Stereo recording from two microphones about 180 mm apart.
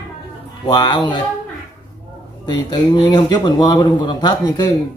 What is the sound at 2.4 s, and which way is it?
Speech, 25° left (ahead or behind).